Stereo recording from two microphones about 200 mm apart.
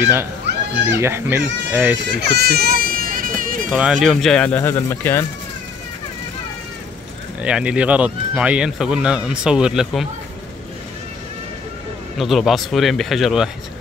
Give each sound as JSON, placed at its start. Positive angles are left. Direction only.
{"t": 0.8, "sound": "speech", "side_deg": -10}
{"t": 2.0, "sound": "baby cry", "side_deg": -55}
{"t": 4.0, "sound": "speech", "side_deg": 0}
{"t": 7.4, "sound": "speech", "side_deg": -5}
{"t": 12.2, "sound": "speech", "side_deg": 0}